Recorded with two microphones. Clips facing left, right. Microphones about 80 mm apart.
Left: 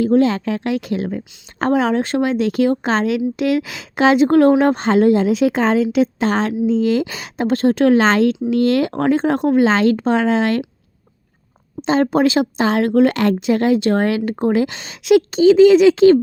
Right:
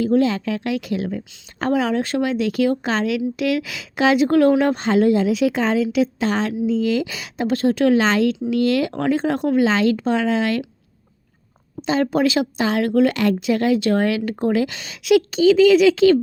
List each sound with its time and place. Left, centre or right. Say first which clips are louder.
0.0 s a woman's voice: left 3 dB; left
11.8 s a woman's voice: left 3 dB; left